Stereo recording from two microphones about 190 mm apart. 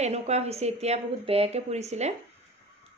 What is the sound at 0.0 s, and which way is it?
A woman's voice, 35° right (ahead or behind).